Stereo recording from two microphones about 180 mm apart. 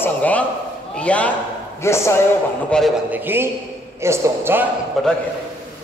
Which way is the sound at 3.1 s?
10° right (ahead or behind).